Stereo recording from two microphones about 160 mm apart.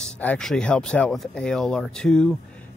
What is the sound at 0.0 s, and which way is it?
Speech, 5° left (ahead or behind).